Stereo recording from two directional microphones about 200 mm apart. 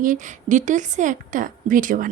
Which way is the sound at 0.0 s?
40° right (ahead or behind).